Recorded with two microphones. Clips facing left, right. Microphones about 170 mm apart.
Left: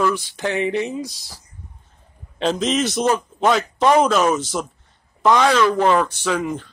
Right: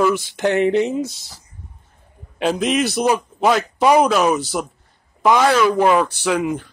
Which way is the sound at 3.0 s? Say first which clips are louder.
Right 1 dB; 10° right (ahead or behind).